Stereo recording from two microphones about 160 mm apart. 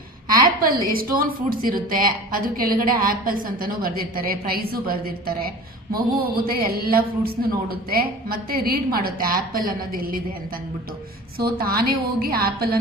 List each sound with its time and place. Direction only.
0.3 s a woman's voice: 60° right (ahead or behind)
11.3 s a man's voice: 70° right (ahead or behind)